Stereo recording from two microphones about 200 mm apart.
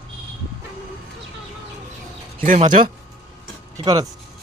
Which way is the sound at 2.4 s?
40° right (ahead or behind).